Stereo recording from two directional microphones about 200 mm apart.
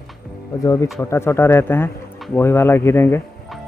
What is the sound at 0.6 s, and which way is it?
Speech, 15° left (ahead or behind).